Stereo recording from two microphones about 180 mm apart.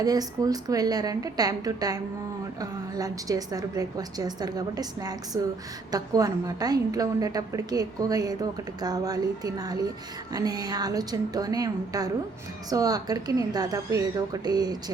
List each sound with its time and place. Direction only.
0.0 s a woman's voice: 20° right (ahead or behind)